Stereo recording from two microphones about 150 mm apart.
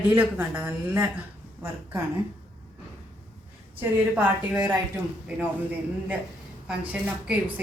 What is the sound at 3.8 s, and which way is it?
Speech, 10° right (ahead or behind).